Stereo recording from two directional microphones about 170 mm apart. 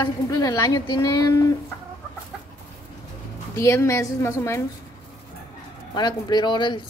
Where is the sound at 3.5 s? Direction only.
15° left (ahead or behind).